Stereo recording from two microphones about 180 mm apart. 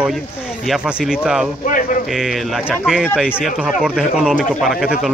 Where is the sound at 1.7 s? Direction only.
50° left (ahead or behind).